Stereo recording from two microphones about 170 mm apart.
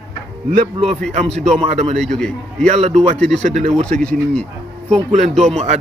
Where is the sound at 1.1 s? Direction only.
40° right (ahead or behind).